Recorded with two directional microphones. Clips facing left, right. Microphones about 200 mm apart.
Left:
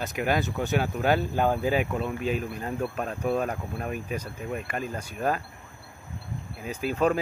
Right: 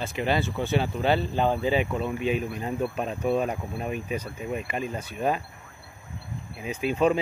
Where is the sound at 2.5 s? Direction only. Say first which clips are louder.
Right 2 dB; 10° right (ahead or behind).